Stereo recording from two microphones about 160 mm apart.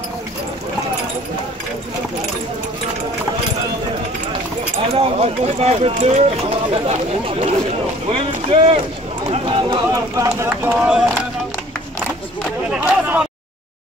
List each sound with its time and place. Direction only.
4.9 s speech: 40° right (ahead or behind)
9.9 s speech: 20° right (ahead or behind)
12.6 s a sound: 5° right (ahead or behind)